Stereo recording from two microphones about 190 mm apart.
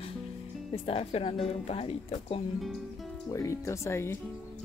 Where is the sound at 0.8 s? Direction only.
30° left (ahead or behind).